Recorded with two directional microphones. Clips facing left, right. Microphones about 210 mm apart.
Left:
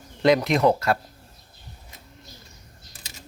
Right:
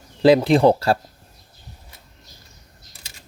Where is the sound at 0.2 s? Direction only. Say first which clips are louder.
Right 5 dB; 30° right (ahead or behind).